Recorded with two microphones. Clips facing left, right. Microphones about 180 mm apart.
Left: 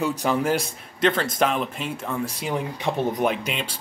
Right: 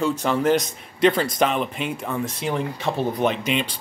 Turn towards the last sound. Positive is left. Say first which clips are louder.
# right 2 dB
turn(degrees=5)  # may be behind; listen again after turning